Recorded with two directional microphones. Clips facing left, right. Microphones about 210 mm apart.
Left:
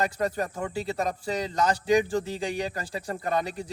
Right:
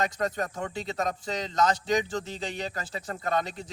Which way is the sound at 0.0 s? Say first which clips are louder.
Left 2 dB; 10° left (ahead or behind).